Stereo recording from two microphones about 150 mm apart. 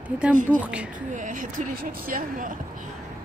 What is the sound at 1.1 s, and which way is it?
Speech, 60° right (ahead or behind).